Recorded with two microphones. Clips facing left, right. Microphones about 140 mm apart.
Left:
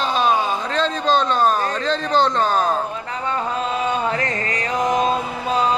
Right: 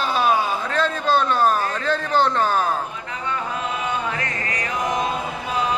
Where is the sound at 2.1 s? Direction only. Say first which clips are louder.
Left 1 dB; 10° right (ahead or behind).